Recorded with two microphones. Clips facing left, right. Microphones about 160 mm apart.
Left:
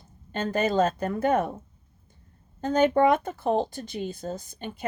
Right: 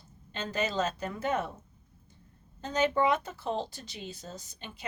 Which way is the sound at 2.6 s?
50° left (ahead or behind).